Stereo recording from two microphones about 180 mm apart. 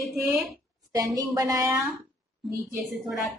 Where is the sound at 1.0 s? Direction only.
20° right (ahead or behind).